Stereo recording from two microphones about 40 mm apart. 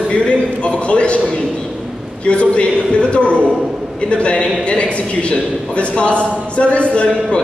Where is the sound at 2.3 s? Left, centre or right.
Left.